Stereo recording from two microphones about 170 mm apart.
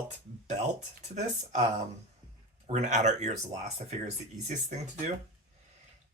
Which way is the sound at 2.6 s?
45° right (ahead or behind).